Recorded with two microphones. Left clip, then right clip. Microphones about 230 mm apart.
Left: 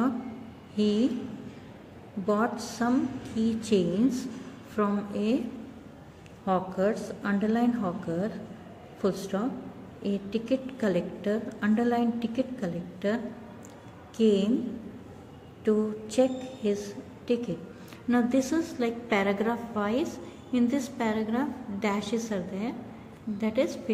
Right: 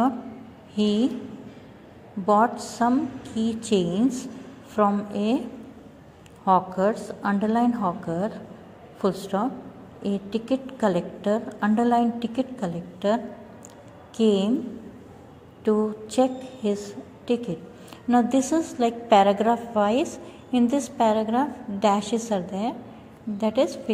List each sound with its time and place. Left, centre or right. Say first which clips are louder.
0.7 s a woman's voice: right 3 dB; centre
2.2 s a woman's voice: right 8 dB; centre
6.4 s a woman's voice: right 7 dB; centre
15.6 s a woman's voice: right 4 dB; centre